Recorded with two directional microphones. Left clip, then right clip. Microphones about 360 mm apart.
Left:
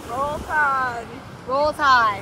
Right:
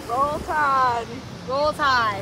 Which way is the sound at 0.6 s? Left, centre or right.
Right.